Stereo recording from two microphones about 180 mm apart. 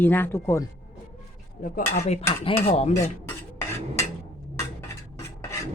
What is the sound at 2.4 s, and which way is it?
Stir, 35° left (ahead or behind).